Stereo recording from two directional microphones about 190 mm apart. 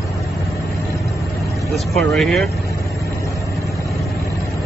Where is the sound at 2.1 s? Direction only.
Centre (ahead or behind).